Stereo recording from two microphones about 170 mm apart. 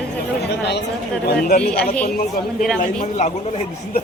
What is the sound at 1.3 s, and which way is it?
Speech, 60° left (ahead or behind).